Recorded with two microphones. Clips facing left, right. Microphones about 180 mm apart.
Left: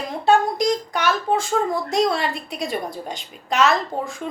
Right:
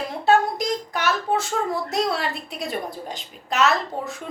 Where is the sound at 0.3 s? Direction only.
5° right (ahead or behind).